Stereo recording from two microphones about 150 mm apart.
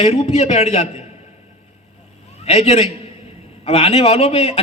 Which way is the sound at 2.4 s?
45° left (ahead or behind).